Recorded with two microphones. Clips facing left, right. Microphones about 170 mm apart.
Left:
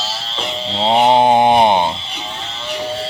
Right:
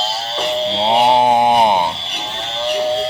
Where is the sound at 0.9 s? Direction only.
5° right (ahead or behind).